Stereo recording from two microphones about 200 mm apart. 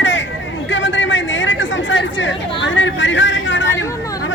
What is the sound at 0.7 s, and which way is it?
Chatter, 65° left (ahead or behind).